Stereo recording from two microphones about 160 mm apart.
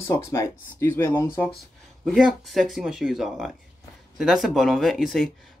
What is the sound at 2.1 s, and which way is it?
Speech, centre (ahead or behind).